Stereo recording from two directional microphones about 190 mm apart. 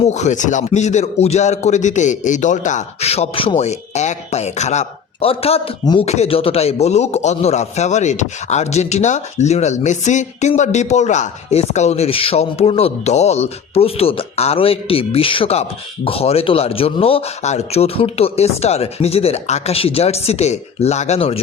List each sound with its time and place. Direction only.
0.0 s a man's voice: 35° left (ahead or behind)